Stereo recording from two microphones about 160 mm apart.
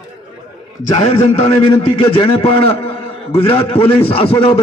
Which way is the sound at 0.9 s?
40° left (ahead or behind).